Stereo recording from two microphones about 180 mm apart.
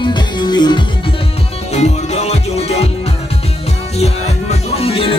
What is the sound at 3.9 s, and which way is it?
Music, 35° left (ahead or behind).